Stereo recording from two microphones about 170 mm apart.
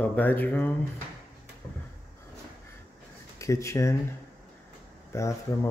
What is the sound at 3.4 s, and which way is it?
Speech, 15° left (ahead or behind).